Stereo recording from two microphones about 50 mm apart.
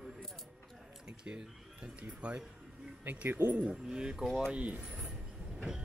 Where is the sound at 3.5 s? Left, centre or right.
Right.